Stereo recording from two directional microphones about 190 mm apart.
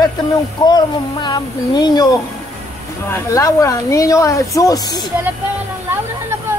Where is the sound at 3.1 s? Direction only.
15° left (ahead or behind).